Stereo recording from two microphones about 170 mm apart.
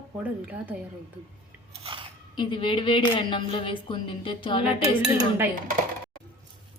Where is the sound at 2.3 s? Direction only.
30° left (ahead or behind).